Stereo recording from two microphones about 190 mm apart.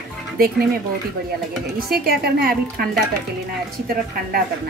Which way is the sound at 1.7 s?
55° right (ahead or behind).